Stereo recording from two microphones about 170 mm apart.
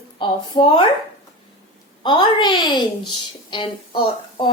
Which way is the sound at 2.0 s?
30° left (ahead or behind).